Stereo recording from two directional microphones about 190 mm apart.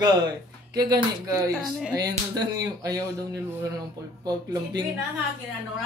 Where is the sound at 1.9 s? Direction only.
20° right (ahead or behind).